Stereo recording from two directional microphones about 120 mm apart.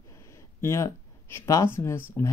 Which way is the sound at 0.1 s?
25° left (ahead or behind).